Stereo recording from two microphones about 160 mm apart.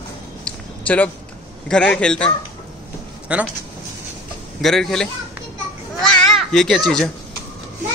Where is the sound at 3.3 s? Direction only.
5° right (ahead or behind).